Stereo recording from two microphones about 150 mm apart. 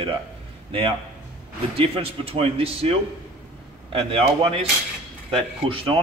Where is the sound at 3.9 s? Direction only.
35° right (ahead or behind).